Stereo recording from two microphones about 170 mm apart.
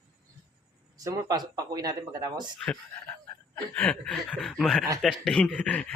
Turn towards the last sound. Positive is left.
turn(degrees=5)  # may be behind; listen again after turning